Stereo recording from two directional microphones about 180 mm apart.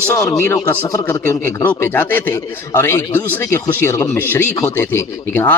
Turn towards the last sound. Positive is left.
turn(degrees=10)  # may be behind; listen again after turning